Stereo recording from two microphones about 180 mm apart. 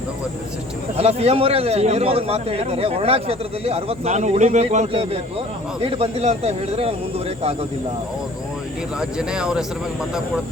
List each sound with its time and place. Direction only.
0.9 s a man's voice: 35° right (ahead or behind)
9.0 s speech: 5° right (ahead or behind)